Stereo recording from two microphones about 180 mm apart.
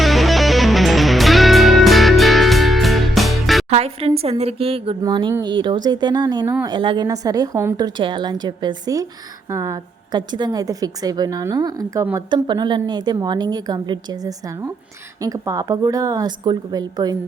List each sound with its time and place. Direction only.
0.0 s music: centre (ahead or behind)
3.7 s a woman's voice: 35° right (ahead or behind)